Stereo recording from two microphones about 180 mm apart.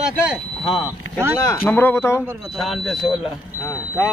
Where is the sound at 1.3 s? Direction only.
15° left (ahead or behind).